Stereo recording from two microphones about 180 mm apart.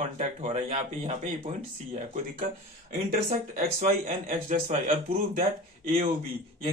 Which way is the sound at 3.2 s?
50° right (ahead or behind).